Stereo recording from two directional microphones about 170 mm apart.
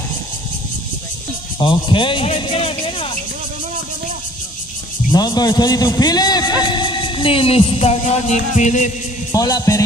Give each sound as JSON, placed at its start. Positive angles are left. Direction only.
{"t": 1.6, "sound": "speech", "side_deg": 30}
{"t": 5.1, "sound": "a man's voice", "side_deg": 25}
{"t": 9.3, "sound": "a man's voice", "side_deg": 20}